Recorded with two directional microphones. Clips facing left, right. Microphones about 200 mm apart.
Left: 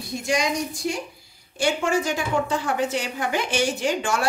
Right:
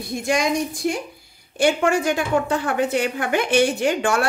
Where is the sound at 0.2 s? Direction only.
55° right (ahead or behind).